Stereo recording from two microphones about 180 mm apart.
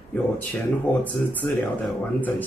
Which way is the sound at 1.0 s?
10° left (ahead or behind).